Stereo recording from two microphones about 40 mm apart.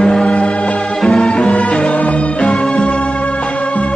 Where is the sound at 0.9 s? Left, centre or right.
Centre.